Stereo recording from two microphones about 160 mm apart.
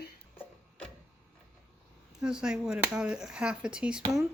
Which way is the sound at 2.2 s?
5° right (ahead or behind).